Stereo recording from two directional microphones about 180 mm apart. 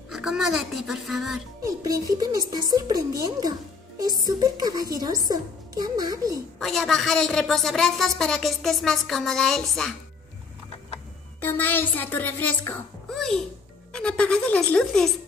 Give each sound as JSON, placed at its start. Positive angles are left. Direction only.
{"t": 0.1, "sound": "a woman's voice", "side_deg": -5}
{"t": 1.6, "sound": "a woman's voice", "side_deg": -20}
{"t": 6.6, "sound": "a woman's voice", "side_deg": 0}
{"t": 11.4, "sound": "a woman's voice", "side_deg": 10}